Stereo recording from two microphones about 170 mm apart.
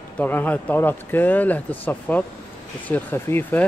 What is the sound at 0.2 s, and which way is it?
Speech, 10° left (ahead or behind).